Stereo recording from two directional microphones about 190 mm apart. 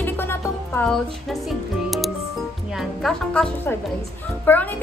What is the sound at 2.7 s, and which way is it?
A child's voice, centre (ahead or behind).